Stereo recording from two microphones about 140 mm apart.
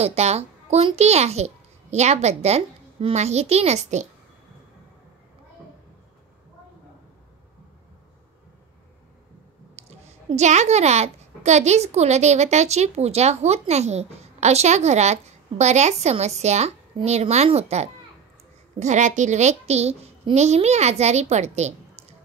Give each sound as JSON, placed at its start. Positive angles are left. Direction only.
{"t": 0.0, "sound": "a child's voice", "side_deg": -50}
{"t": 9.8, "sound": "a woman's voice", "side_deg": -50}